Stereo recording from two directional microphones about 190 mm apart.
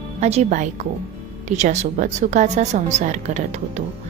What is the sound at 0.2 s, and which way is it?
A woman's voice, 35° right (ahead or behind).